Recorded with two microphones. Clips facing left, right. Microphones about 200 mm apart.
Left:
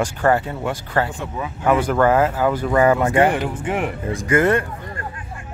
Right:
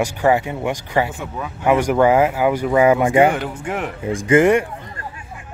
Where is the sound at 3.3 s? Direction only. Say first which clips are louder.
Left 2 dB; 5° left (ahead or behind).